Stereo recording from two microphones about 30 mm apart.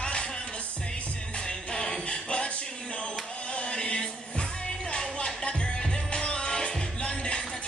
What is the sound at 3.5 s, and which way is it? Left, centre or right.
Music, left.